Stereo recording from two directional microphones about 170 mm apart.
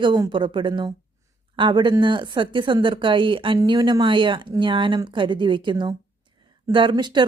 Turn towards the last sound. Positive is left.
turn(degrees=-25)  # may be behind; listen again after turning